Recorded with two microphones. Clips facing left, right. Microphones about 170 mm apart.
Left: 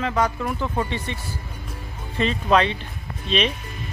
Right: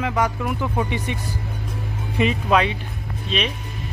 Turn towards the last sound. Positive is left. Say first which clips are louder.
# left 2 dB
turn(degrees=-5)  # may be behind; listen again after turning